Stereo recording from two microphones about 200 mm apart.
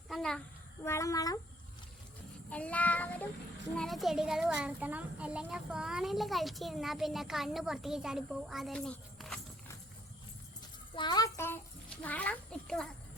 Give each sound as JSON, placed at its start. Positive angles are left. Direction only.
{"t": 0.1, "sound": "a child's voice", "side_deg": 5}
{"t": 0.9, "sound": "child singing", "side_deg": 15}
{"t": 2.5, "sound": "child singing", "side_deg": 5}
{"t": 3.8, "sound": "a child's voice", "side_deg": 0}
{"t": 10.9, "sound": "a child's voice", "side_deg": 20}